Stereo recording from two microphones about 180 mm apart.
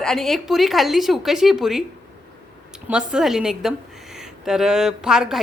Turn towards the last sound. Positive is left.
turn(degrees=-5)  # may be behind; listen again after turning